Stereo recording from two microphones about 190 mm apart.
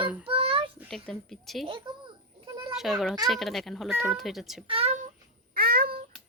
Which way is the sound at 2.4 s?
25° right (ahead or behind).